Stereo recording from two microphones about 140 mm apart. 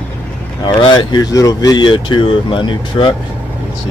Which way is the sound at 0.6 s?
30° left (ahead or behind).